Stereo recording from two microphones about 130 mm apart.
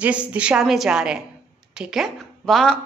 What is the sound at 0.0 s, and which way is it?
A woman's voice, 10° right (ahead or behind).